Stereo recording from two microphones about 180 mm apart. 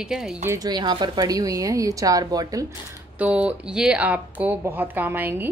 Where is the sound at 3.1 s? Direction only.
10° right (ahead or behind).